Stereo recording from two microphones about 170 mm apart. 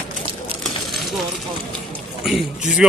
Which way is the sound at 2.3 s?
5° right (ahead or behind).